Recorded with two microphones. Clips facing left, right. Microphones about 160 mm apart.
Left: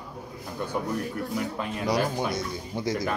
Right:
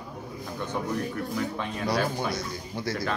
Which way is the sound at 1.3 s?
5° left (ahead or behind).